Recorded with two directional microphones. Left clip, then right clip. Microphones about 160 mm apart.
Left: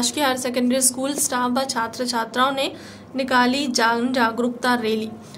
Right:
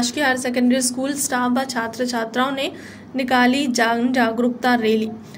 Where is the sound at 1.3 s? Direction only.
10° right (ahead or behind).